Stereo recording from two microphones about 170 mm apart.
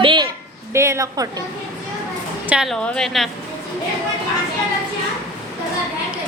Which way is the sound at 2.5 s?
Centre (ahead or behind).